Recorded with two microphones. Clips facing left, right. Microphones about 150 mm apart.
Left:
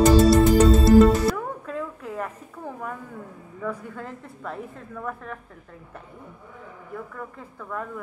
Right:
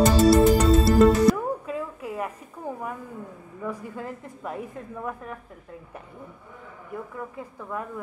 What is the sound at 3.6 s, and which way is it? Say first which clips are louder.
A woman's voice: even; 15° right (ahead or behind).